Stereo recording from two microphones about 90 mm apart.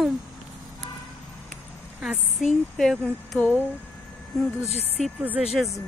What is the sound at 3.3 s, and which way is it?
Speech, 20° left (ahead or behind).